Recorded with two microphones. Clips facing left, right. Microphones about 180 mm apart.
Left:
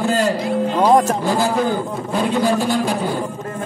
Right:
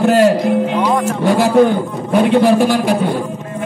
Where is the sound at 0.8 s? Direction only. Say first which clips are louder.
Left 2 dB; 40° left (ahead or behind).